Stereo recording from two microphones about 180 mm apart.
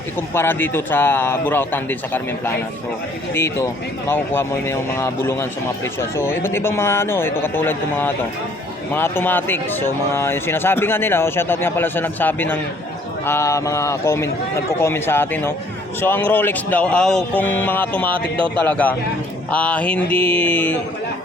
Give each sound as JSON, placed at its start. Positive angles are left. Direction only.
{"t": 0.2, "sound": "a man's voice", "side_deg": 10}